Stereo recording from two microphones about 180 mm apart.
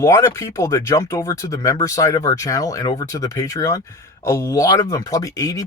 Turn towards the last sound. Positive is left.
turn(degrees=20)  # may be behind; listen again after turning